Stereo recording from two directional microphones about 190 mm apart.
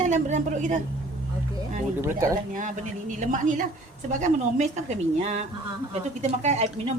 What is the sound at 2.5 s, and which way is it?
A woman's voice, 40° right (ahead or behind).